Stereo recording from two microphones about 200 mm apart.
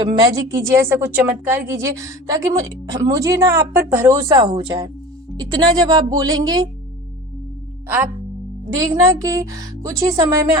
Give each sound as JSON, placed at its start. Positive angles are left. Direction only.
{"t": 0.0, "sound": "a woman's voice", "side_deg": -15}
{"t": 8.7, "sound": "a woman's voice", "side_deg": -15}